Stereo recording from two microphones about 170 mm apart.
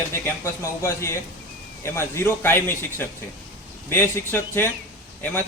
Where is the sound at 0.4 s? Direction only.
15° left (ahead or behind).